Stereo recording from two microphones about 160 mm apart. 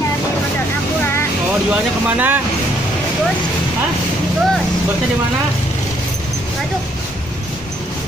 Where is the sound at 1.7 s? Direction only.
10° right (ahead or behind).